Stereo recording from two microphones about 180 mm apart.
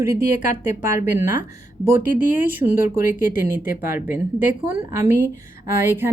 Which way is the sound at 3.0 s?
50° left (ahead or behind).